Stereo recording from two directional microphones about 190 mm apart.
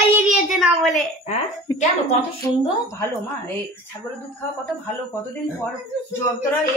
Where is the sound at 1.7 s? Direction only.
20° left (ahead or behind).